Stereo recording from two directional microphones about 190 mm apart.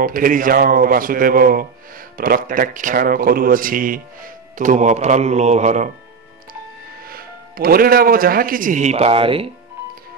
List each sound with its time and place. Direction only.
0.0 s speech: 45° right (ahead or behind)
7.1 s a man's voice: 50° right (ahead or behind); by 9.5 s 30° right (ahead or behind)